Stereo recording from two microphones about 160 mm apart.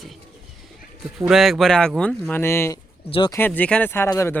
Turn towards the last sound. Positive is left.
turn(degrees=15)  # may be behind; listen again after turning